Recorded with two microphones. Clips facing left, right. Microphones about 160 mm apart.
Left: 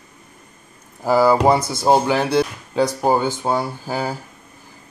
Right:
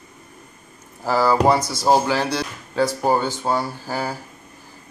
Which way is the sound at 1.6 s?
55° left (ahead or behind).